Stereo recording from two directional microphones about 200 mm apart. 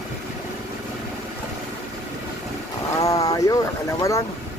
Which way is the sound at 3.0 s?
15° left (ahead or behind).